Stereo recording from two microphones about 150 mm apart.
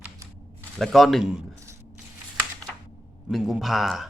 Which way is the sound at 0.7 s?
Centre (ahead or behind).